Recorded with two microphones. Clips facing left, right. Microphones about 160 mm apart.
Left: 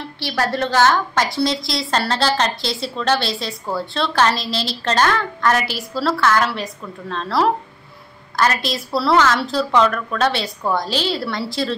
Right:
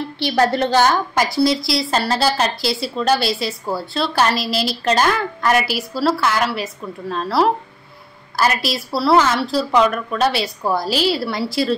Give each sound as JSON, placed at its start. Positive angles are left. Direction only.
{"t": 0.2, "sound": "a woman's voice", "side_deg": -15}